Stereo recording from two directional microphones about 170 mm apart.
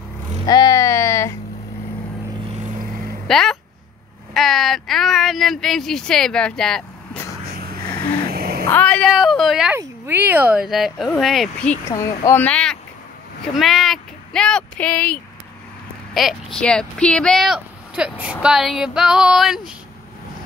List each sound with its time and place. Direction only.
0.5 s a sound: 25° left (ahead or behind)
2.6 s vehicle: 55° right (ahead or behind)
3.3 s speech: centre (ahead or behind)
7.5 s snoring: 65° right (ahead or behind)
8.3 s a sound: 65° right (ahead or behind)
8.6 s speech: 10° left (ahead or behind)
9.8 s speech: 10° right (ahead or behind)